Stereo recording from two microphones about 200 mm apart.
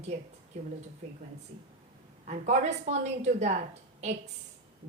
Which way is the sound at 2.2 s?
35° right (ahead or behind).